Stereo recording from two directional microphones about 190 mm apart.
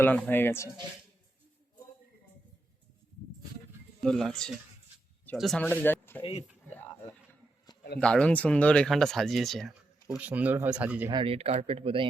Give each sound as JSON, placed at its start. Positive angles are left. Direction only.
{"t": 0.0, "sound": "speech", "side_deg": 10}
{"t": 4.0, "sound": "speech", "side_deg": 5}
{"t": 6.7, "sound": "a sound", "side_deg": 10}
{"t": 7.9, "sound": "speech", "side_deg": 5}
{"t": 11.1, "sound": "speech", "side_deg": -30}